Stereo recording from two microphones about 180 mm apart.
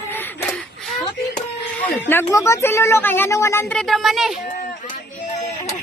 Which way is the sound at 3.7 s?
Centre (ahead or behind).